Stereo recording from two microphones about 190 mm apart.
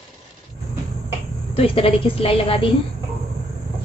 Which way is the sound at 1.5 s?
30° left (ahead or behind).